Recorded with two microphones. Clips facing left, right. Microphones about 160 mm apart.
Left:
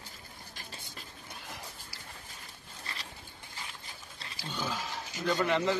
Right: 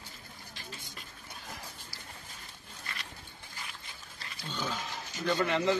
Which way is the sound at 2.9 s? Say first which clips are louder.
Even; 30° left (ahead or behind).